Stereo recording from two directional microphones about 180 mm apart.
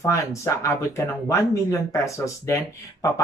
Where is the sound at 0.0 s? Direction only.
15° left (ahead or behind).